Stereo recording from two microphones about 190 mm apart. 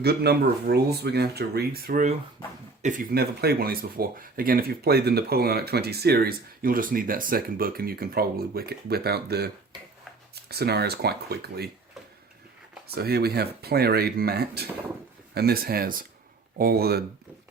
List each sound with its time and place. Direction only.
0.0 s speech: 60° right (ahead or behind)
10.5 s speech: 60° right (ahead or behind)
12.9 s speech: 55° right (ahead or behind)